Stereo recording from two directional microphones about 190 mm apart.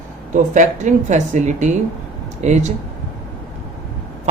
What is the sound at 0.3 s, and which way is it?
Speech, 40° right (ahead or behind).